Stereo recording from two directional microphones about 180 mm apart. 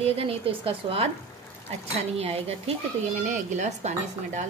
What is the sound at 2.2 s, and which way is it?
A woman's voice, 35° right (ahead or behind).